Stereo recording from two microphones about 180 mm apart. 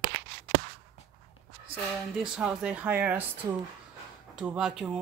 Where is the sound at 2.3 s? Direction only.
5° right (ahead or behind).